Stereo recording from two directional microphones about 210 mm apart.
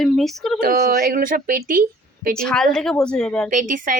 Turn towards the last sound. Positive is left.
turn(degrees=-40)  # may be behind; listen again after turning